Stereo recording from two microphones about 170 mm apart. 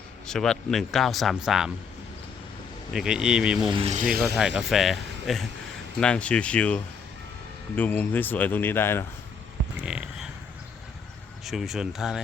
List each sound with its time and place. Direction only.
0.3 s a man's voice: 5° left (ahead or behind)
2.9 s a man's voice: 5° right (ahead or behind)
3.8 s speech: 40° right (ahead or behind)
4.4 s a man's voice: 5° right (ahead or behind); by 9.0 s 15° left (ahead or behind)
9.8 s a sound: 5° right (ahead or behind)
11.4 s a man's voice: centre (ahead or behind)